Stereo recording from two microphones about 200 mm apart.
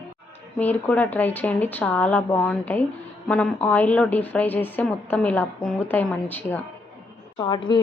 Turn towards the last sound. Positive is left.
turn(degrees=20)  # may be behind; listen again after turning